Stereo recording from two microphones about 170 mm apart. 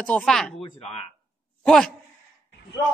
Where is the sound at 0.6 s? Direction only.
35° left (ahead or behind).